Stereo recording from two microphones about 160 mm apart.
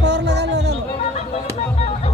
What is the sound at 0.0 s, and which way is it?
Music, 90° right.